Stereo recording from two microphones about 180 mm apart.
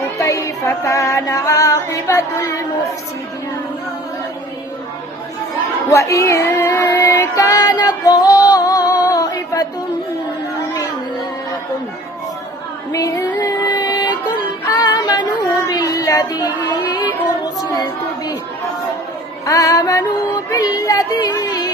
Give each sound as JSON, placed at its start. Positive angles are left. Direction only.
{"t": 0.2, "sound": "music", "side_deg": 15}
{"t": 5.9, "sound": "child singing", "side_deg": 15}
{"t": 12.9, "sound": "music", "side_deg": 20}
{"t": 14.8, "sound": "a sound", "side_deg": 25}
{"t": 19.5, "sound": "music", "side_deg": 20}